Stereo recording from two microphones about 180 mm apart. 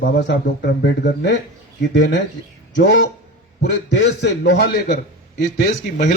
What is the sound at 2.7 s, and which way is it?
Speech, 90° left.